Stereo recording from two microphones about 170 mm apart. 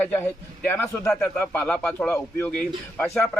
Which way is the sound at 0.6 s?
10° left (ahead or behind).